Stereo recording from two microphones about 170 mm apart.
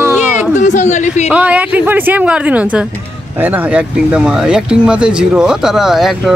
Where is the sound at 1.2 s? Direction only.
10° right (ahead or behind).